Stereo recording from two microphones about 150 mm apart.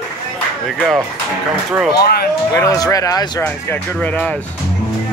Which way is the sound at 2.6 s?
25° left (ahead or behind).